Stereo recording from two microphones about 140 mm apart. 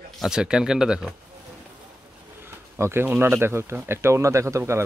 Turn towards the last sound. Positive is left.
turn(degrees=-20)  # may be behind; listen again after turning